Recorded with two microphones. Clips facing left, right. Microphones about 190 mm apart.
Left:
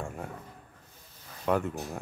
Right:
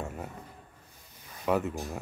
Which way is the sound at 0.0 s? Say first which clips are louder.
Even; 5° right (ahead or behind).